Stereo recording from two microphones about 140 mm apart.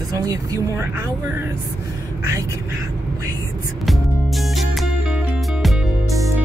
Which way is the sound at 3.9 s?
Centre (ahead or behind).